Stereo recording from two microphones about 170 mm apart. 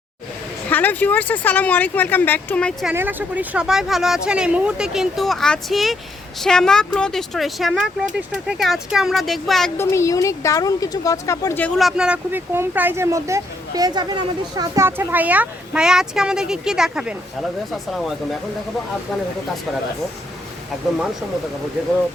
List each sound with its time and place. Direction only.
0.7 s speech: 10° left (ahead or behind)
2.8 s speech: 10° right (ahead or behind)
9.7 s speech: 15° left (ahead or behind)
11.8 s speech: centre (ahead or behind)